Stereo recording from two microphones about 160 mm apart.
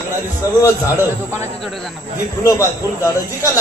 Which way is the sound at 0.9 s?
15° right (ahead or behind).